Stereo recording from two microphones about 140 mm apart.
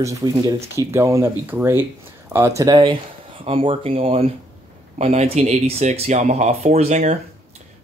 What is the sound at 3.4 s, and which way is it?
Speech, 40° right (ahead or behind).